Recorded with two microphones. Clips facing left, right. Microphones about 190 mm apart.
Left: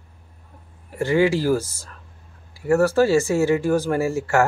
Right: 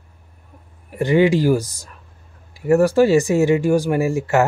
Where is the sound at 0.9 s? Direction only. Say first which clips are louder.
Right 3 dB; 20° right (ahead or behind).